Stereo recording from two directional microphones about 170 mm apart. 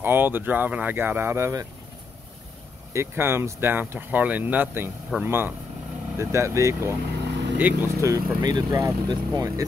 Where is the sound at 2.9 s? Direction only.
15° right (ahead or behind).